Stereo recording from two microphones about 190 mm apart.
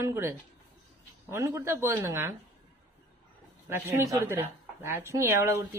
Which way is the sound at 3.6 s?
10° right (ahead or behind).